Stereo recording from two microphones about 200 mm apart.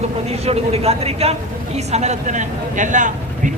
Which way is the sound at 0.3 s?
30° right (ahead or behind).